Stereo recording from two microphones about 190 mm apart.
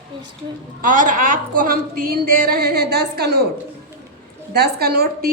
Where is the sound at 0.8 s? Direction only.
45° right (ahead or behind).